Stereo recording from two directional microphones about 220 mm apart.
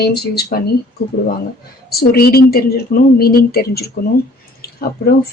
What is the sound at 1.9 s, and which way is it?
Speech, 45° left (ahead or behind).